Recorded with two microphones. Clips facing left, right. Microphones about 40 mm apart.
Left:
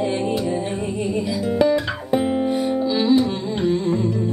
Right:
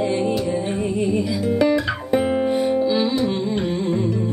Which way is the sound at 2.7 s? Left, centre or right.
Right.